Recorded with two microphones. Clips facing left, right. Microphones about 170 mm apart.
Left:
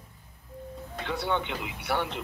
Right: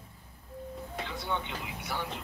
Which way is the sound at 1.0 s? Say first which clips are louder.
Left 7 dB; 70° left (ahead or behind).